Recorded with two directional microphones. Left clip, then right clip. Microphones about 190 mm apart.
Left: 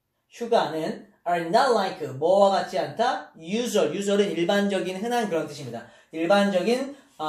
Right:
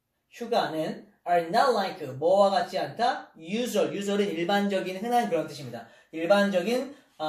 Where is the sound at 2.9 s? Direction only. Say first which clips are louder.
Left 2 dB; 15° left (ahead or behind).